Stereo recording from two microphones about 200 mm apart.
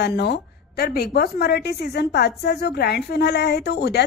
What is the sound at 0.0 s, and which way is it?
A woman's voice, 55° left (ahead or behind).